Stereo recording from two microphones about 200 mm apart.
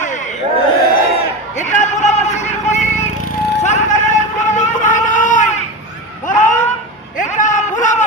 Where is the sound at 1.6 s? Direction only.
35° left (ahead or behind).